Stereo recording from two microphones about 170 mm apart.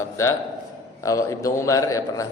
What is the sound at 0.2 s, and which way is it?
A man's voice, 20° left (ahead or behind).